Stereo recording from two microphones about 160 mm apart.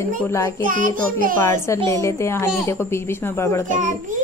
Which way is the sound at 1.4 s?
15° left (ahead or behind).